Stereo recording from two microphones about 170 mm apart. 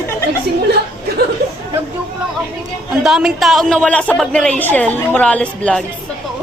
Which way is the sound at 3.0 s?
5° right (ahead or behind).